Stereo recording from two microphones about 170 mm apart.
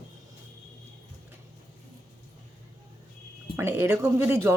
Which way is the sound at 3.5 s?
15° right (ahead or behind).